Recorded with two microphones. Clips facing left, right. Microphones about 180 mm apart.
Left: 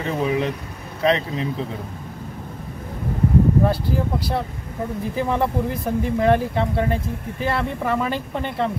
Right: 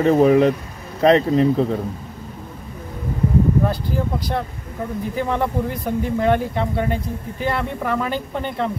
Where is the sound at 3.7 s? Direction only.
5° left (ahead or behind).